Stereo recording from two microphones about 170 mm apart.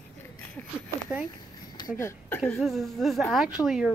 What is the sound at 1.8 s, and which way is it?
Speech, 15° left (ahead or behind).